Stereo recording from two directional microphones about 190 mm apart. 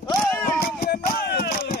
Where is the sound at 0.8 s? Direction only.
50° left (ahead or behind).